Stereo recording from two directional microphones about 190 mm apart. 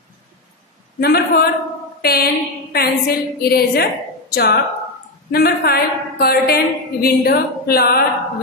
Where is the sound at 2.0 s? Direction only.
55° left (ahead or behind).